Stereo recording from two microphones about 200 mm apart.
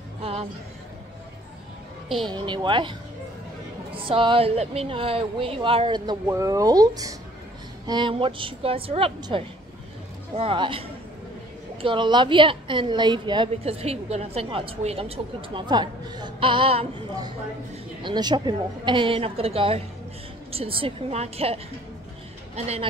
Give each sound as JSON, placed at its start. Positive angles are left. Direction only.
{"t": 0.2, "sound": "speech", "side_deg": -30}
{"t": 2.2, "sound": "a woman's voice", "side_deg": -20}